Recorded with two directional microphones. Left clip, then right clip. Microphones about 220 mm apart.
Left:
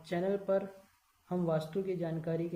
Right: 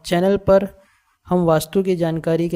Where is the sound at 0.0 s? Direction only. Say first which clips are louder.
Right 16 dB; 45° right (ahead or behind).